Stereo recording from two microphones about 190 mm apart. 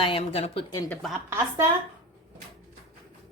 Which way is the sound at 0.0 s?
30° left (ahead or behind).